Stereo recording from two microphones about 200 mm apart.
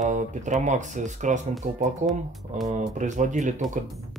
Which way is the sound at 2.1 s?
Centre (ahead or behind).